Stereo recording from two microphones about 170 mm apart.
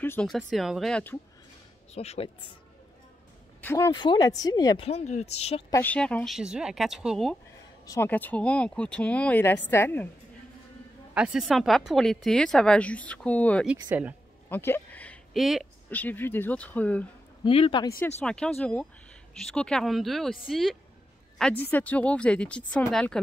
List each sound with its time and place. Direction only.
0.0 s a sound: 10° left (ahead or behind)
0.5 s speech: centre (ahead or behind)
2.0 s speech: 35° left (ahead or behind)
3.6 s speech: 15° left (ahead or behind)
4.8 s speech: 40° left (ahead or behind)
5.7 s speech: 10° left (ahead or behind)
7.8 s speech: 15° left (ahead or behind)
11.1 s speech: 5° right (ahead or behind)
13.7 s speech: 10° right (ahead or behind)
14.5 s a sound: 10° left (ahead or behind)
15.9 s speech: 10° left (ahead or behind)
17.5 s speech: 30° left (ahead or behind)
18.2 s speech: 5° left (ahead or behind)